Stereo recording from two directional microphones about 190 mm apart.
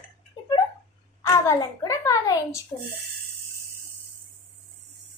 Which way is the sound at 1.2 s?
15° left (ahead or behind).